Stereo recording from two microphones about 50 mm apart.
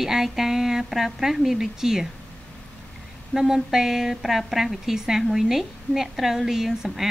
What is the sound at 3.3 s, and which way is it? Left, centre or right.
A woman's voice, centre.